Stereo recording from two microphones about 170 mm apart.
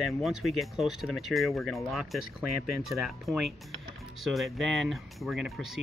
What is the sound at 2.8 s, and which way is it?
Speech, centre (ahead or behind).